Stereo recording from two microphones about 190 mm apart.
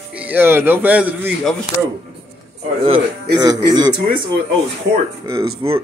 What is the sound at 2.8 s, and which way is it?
Speech, 25° right (ahead or behind).